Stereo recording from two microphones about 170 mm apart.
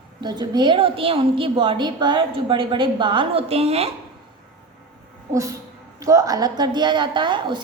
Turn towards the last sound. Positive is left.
turn(degrees=-30)  # may be behind; listen again after turning